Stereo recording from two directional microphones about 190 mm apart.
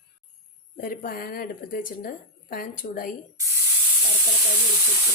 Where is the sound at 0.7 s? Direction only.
45° left (ahead or behind).